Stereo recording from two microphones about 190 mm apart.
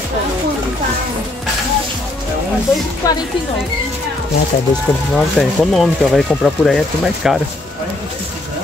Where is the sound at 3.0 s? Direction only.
15° left (ahead or behind).